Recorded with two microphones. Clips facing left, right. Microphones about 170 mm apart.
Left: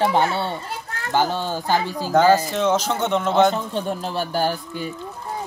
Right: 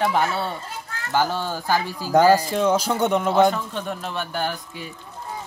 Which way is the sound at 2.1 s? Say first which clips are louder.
Even; 10° right (ahead or behind).